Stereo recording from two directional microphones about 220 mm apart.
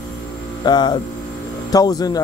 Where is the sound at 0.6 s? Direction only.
20° left (ahead or behind).